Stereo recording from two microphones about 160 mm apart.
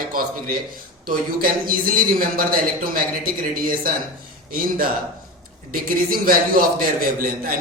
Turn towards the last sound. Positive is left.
turn(degrees=-60)  # may be behind; listen again after turning